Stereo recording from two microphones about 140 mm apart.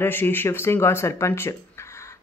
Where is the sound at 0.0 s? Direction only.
15° left (ahead or behind).